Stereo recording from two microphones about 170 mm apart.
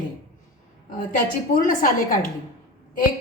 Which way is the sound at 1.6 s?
55° left (ahead or behind).